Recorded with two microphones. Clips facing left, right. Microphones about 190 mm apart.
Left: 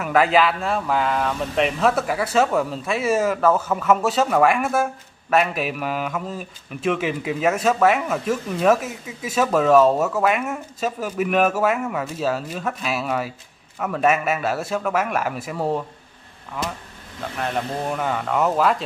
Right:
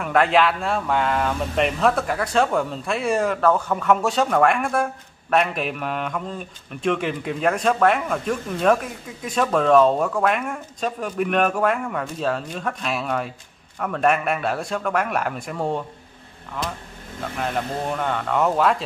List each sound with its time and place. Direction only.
0.0 s a man's voice: 5° left (ahead or behind)